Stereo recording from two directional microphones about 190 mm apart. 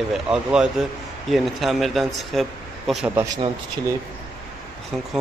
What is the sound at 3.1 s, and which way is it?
Speech, 20° right (ahead or behind).